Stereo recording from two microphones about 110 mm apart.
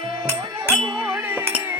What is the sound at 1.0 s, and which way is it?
Music, 20° right (ahead or behind).